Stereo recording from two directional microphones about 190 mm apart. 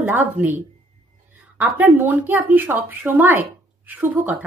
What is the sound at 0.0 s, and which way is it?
Speech, 10° right (ahead or behind).